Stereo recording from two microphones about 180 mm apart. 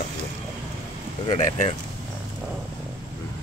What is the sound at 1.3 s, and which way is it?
Speech, 40° left (ahead or behind).